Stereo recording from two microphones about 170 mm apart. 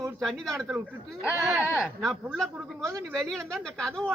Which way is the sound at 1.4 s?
15° right (ahead or behind).